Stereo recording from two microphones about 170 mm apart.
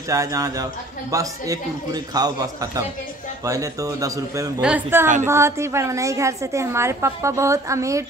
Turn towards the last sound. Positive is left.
turn(degrees=-20)  # may be behind; listen again after turning